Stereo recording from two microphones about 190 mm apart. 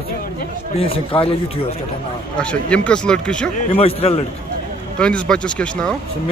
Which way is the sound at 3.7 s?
30° left (ahead or behind).